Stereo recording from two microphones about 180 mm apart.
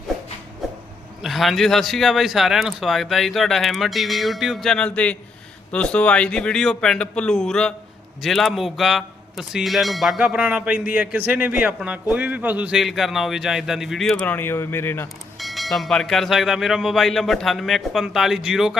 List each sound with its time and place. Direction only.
1.2 s speech: centre (ahead or behind)
15.4 s speech: centre (ahead or behind)